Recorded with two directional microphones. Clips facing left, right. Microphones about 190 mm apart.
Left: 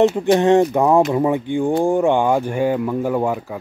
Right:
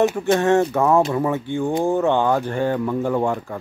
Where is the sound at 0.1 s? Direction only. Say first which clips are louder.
Left 3 dB; 20° left (ahead or behind).